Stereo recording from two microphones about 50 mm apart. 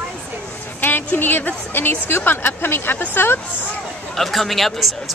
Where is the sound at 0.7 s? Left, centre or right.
Left.